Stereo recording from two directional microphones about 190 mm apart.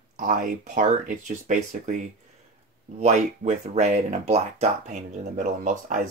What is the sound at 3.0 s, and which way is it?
Speech, 40° right (ahead or behind).